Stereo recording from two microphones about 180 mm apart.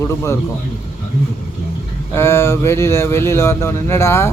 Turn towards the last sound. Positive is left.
turn(degrees=15)  # may be behind; listen again after turning